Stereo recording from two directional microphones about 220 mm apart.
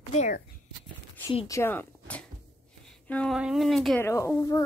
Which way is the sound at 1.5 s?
10° left (ahead or behind).